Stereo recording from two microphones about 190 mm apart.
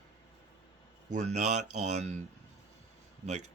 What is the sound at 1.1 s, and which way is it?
Speech, 40° right (ahead or behind).